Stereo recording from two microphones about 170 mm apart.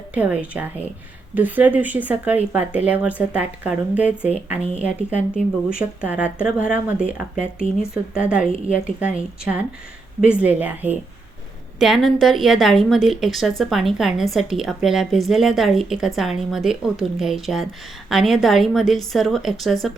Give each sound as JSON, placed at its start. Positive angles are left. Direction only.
{"t": 0.1, "sound": "a woman's voice", "side_deg": -5}